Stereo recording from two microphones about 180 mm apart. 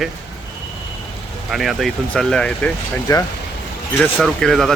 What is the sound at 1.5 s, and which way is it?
Speech, centre (ahead or behind).